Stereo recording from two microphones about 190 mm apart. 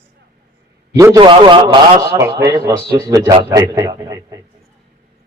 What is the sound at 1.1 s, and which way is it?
A man's voice, 25° right (ahead or behind).